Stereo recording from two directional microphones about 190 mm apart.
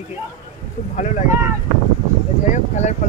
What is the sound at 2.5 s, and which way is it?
Speech, 40° left (ahead or behind).